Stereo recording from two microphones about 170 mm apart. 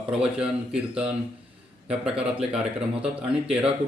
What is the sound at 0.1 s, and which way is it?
A man's voice, 5° right (ahead or behind).